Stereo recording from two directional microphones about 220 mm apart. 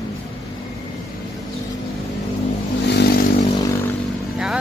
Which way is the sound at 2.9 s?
50° left (ahead or behind).